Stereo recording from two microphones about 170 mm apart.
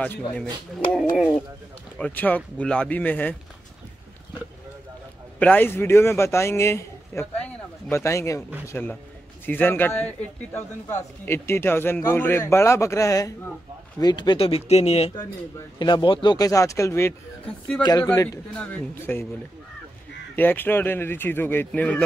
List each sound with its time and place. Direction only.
0.0 s a man's voice: 5° left (ahead or behind)
2.0 s a man's voice: 10° left (ahead or behind)
5.4 s a man's voice: 10° left (ahead or behind)
20.3 s a man's voice: 10° left (ahead or behind)